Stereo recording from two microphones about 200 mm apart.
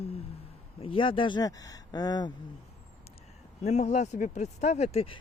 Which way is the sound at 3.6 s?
35° left (ahead or behind).